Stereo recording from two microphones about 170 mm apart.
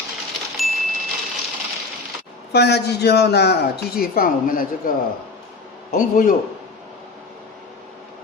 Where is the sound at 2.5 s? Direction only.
75° left (ahead or behind); by 4.9 s 55° left (ahead or behind).